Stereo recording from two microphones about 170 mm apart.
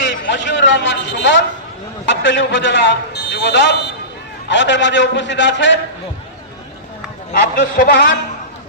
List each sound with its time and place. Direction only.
0.0 s a sound: 90° left
2.0 s a man's voice: 90° left
7.5 s a man's voice: 60° left (ahead or behind)